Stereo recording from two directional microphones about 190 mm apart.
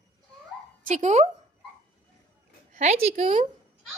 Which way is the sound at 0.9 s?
40° right (ahead or behind).